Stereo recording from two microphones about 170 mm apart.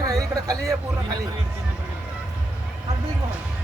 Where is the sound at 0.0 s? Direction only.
20° right (ahead or behind).